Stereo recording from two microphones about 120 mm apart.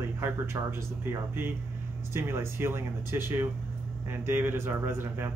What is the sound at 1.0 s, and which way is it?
Speech, 20° right (ahead or behind).